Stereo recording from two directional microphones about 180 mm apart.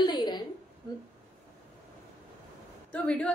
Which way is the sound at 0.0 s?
25° left (ahead or behind).